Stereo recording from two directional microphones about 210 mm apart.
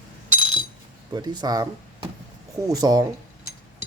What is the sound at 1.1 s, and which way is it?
Speech, 20° right (ahead or behind).